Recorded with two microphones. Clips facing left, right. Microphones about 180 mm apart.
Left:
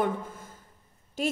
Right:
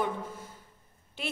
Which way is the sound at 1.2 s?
45° left (ahead or behind).